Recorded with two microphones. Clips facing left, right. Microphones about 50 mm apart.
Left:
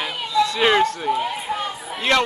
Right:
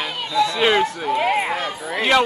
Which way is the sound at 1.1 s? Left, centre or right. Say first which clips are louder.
Right 4 dB; right.